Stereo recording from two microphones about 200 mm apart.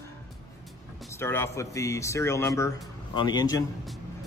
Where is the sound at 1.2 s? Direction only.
10° left (ahead or behind).